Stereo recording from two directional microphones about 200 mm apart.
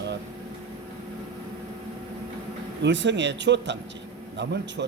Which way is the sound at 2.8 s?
60° right (ahead or behind).